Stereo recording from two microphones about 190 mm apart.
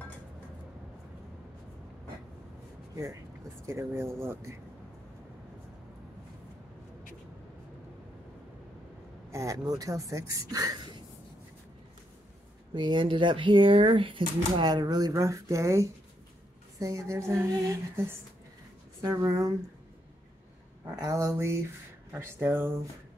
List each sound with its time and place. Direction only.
3.6 s speech: 15° right (ahead or behind)
9.3 s speech: 15° right (ahead or behind)
12.7 s speech: 25° right (ahead or behind)
21.0 s speech: 15° right (ahead or behind)